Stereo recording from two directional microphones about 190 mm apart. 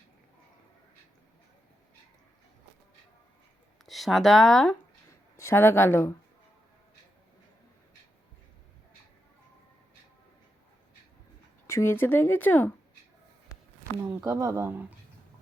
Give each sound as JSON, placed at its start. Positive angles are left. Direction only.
{"t": 3.8, "sound": "speech", "side_deg": 0}
{"t": 5.4, "sound": "speech", "side_deg": 15}
{"t": 11.6, "sound": "speech", "side_deg": 15}
{"t": 14.0, "sound": "speech", "side_deg": -15}